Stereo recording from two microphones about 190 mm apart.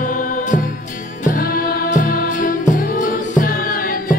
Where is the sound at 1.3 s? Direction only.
50° left (ahead or behind).